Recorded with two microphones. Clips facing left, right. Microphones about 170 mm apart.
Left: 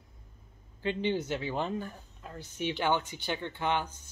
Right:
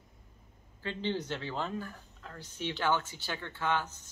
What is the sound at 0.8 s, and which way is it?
Speech, 15° left (ahead or behind).